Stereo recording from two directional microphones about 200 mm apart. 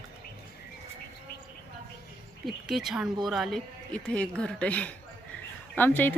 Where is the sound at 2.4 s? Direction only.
Centre (ahead or behind).